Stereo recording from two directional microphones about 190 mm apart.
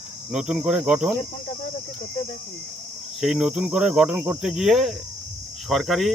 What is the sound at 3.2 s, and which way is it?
Cricket, centre (ahead or behind).